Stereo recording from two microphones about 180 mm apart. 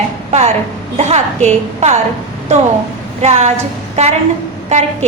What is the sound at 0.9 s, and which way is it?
A woman's voice, 40° right (ahead or behind).